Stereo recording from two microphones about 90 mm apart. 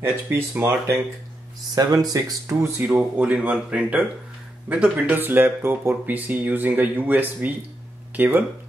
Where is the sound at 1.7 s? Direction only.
45° right (ahead or behind).